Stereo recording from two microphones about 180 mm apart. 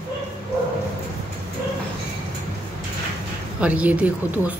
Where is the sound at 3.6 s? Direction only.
5° right (ahead or behind).